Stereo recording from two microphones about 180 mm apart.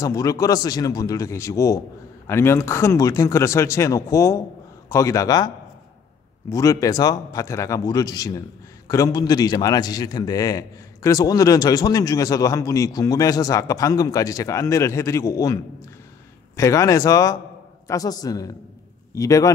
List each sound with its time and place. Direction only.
0.0 s a man's voice: 20° left (ahead or behind)
6.5 s a man's voice: 20° left (ahead or behind)